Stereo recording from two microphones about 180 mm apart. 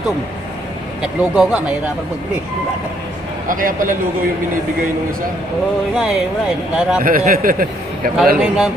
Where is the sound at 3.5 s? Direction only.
50° right (ahead or behind).